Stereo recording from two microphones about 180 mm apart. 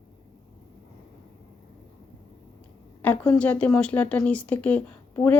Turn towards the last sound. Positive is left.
turn(degrees=10)  # may be behind; listen again after turning